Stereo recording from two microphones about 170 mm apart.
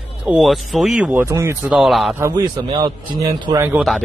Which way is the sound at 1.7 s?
Centre (ahead or behind).